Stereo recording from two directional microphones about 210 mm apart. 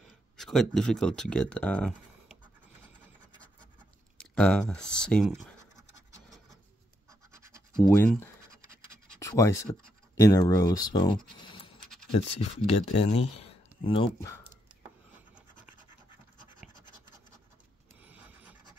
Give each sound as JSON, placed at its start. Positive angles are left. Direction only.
{"t": 0.0, "sound": "speech", "side_deg": 0}
{"t": 4.2, "sound": "speech", "side_deg": 5}
{"t": 7.9, "sound": "speech", "side_deg": 10}
{"t": 11.3, "sound": "scratch", "side_deg": 20}
{"t": 12.1, "sound": "speech", "side_deg": 30}
{"t": 15.1, "sound": "scratch", "side_deg": -5}
{"t": 18.0, "sound": "a sound", "side_deg": -5}